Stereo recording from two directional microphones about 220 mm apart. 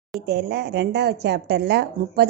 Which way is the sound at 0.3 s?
45° right (ahead or behind).